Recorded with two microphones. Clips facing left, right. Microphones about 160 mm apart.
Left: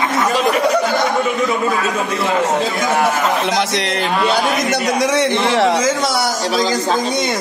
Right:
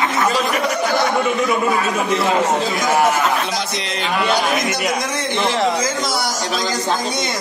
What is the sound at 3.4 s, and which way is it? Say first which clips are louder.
Speech: left 6 dB; 70° left (ahead or behind).